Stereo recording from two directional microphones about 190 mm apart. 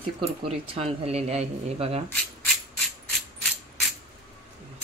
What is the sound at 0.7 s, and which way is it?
Speech, 35° right (ahead or behind).